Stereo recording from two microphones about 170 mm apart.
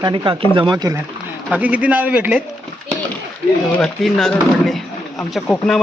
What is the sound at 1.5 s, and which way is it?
Speech, 10° right (ahead or behind).